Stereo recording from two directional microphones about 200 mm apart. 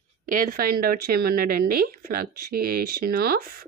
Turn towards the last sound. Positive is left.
turn(degrees=-50)  # may be behind; listen again after turning